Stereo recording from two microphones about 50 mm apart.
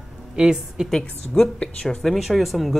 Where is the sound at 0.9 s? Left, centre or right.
Centre.